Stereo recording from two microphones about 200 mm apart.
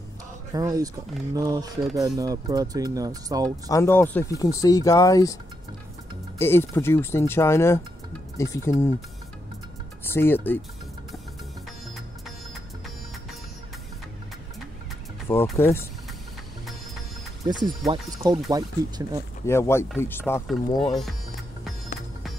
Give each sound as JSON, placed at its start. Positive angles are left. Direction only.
{"t": 0.5, "sound": "speech", "side_deg": -15}
{"t": 3.6, "sound": "speech", "side_deg": 15}
{"t": 10.1, "sound": "speech", "side_deg": 10}
{"t": 15.5, "sound": "speech", "side_deg": 10}
{"t": 17.5, "sound": "speech", "side_deg": -20}
{"t": 19.4, "sound": "speech", "side_deg": 15}